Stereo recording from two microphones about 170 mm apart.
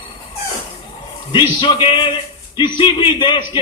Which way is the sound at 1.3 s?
30° left (ahead or behind).